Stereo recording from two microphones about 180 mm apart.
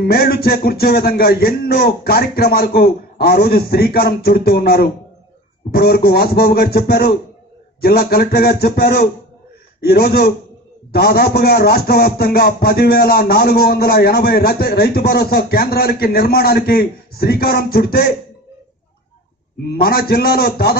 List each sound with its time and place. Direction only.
0.0 s a man's voice: 60° left (ahead or behind)
19.6 s a man's voice: 60° left (ahead or behind)